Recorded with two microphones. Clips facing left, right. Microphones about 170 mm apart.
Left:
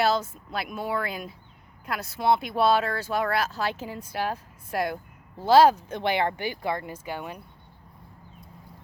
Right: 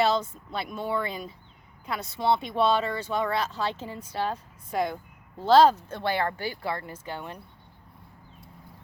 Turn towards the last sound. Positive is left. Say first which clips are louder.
# left 2 dB
turn(degrees=10)  # may be behind; listen again after turning